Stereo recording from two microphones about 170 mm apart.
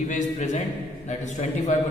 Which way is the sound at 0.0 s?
45° left (ahead or behind).